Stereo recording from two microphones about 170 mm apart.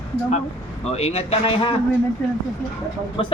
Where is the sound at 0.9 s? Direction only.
35° left (ahead or behind).